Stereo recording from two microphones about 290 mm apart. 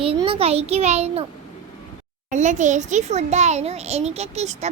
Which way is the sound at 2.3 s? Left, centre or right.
Right.